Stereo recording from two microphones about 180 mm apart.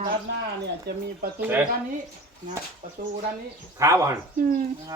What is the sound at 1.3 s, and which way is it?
Speech, 10° right (ahead or behind).